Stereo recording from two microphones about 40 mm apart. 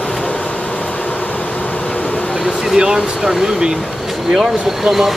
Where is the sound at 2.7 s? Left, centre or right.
Centre.